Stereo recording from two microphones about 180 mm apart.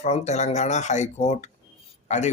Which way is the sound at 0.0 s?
40° left (ahead or behind).